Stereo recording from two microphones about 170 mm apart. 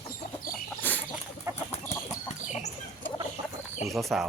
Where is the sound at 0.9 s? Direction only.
10° left (ahead or behind).